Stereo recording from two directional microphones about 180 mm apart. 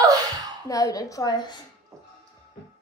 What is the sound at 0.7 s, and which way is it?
Speech, 20° left (ahead or behind).